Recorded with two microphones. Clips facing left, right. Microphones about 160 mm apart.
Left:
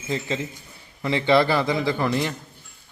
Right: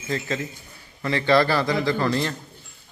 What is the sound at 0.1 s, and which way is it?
A man's voice, 20° left (ahead or behind).